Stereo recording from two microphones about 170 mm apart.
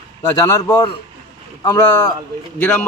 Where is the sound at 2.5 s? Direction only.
10° left (ahead or behind).